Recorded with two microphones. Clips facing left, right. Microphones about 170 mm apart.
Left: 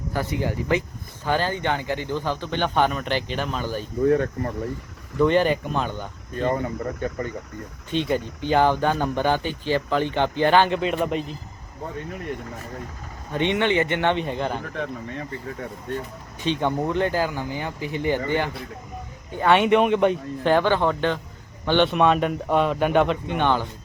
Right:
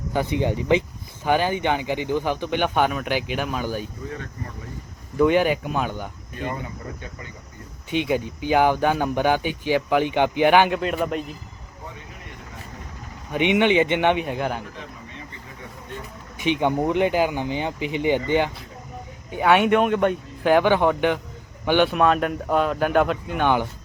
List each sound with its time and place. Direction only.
0.1 s speech: 20° right (ahead or behind)
4.0 s speech: 60° left (ahead or behind)
5.2 s speech: 10° right (ahead or behind)
6.4 s speech: 50° left (ahead or behind)
8.0 s speech: 10° right (ahead or behind)
10.8 s speech: centre (ahead or behind)
13.3 s speech: 15° right (ahead or behind)
16.4 s speech: 15° right (ahead or behind)
19.5 s speech: centre (ahead or behind)
20.5 s speech: 15° right (ahead or behind)